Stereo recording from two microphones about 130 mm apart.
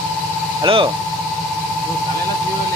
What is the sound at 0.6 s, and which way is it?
Speech, 40° right (ahead or behind).